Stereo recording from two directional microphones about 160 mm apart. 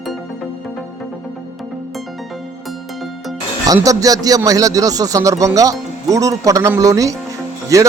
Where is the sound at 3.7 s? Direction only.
20° right (ahead or behind).